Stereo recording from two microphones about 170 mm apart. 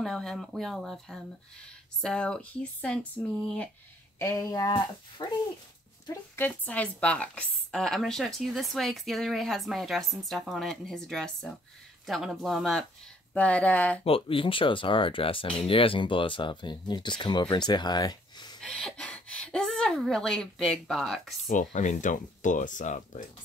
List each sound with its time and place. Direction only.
0.0 s a woman's voice: 5° left (ahead or behind)
4.2 s speech: 20° left (ahead or behind)
6.3 s a woman's voice: 10° left (ahead or behind)
14.0 s speech: 30° left (ahead or behind)
18.6 s speech: 5° left (ahead or behind)
21.5 s speech: 45° left (ahead or behind)